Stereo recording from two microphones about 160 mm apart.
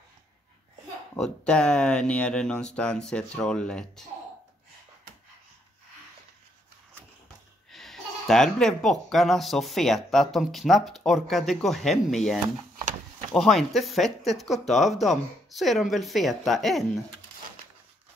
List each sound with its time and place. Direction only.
1.1 s speech: 5° left (ahead or behind)
7.7 s speech: centre (ahead or behind)
13.3 s speech: centre (ahead or behind)